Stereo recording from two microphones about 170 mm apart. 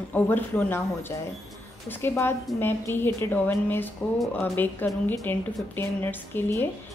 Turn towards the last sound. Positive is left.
turn(degrees=10)  # may be behind; listen again after turning